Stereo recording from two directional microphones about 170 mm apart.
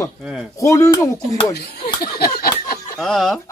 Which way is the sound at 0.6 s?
20° left (ahead or behind).